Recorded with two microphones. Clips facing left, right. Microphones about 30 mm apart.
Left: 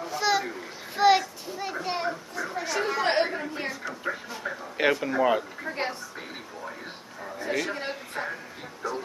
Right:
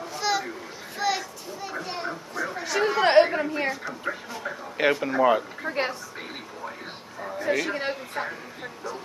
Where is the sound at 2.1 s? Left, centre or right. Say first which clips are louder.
Right 2 dB; centre.